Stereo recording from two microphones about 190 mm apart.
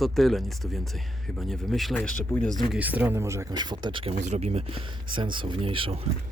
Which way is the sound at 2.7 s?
10° right (ahead or behind).